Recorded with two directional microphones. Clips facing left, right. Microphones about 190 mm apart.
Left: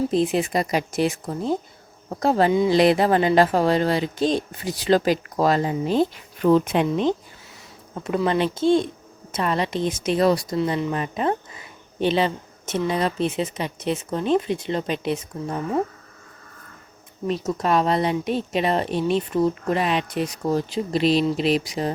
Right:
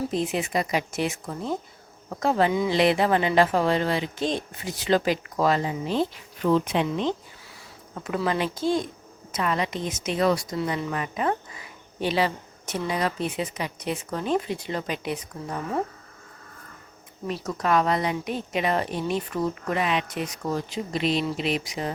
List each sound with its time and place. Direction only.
0.1 s speech: 35° left (ahead or behind); by 7.1 s 50° left (ahead or behind)
8.0 s a woman's voice: 25° left (ahead or behind)
10.6 s a woman's voice: 20° left (ahead or behind)
17.2 s speech: 25° left (ahead or behind)